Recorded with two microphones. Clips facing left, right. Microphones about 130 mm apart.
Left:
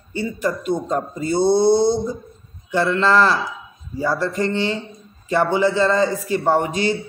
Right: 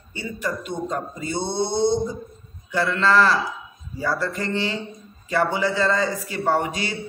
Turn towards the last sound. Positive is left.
turn(degrees=30)  # may be behind; listen again after turning